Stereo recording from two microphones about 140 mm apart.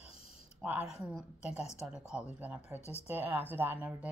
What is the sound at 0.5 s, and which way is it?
A woman's voice, 10° right (ahead or behind).